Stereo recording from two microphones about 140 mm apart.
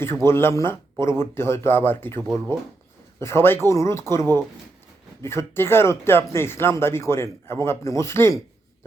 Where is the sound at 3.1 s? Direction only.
20° left (ahead or behind).